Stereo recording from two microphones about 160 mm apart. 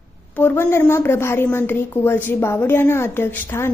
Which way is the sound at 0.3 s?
15° left (ahead or behind).